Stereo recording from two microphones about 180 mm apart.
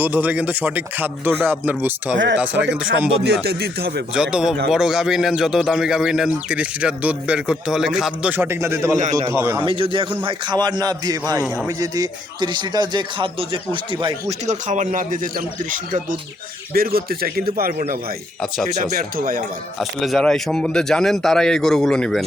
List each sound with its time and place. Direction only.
0.0 s speech: 10° right (ahead or behind)
2.1 s speech: 85° right
2.4 s speech: 10° right (ahead or behind)
3.4 s a man's voice: 65° right (ahead or behind)
4.1 s speech: 5° right (ahead or behind)
9.6 s speech: 30° right (ahead or behind)
14.4 s a man's voice: 40° right (ahead or behind)
19.8 s speech: centre (ahead or behind)